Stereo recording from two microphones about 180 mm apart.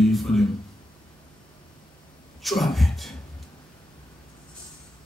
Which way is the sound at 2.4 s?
Centre (ahead or behind).